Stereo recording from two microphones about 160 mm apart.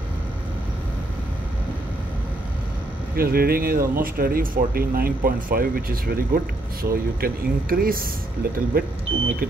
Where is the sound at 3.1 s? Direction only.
70° right (ahead or behind).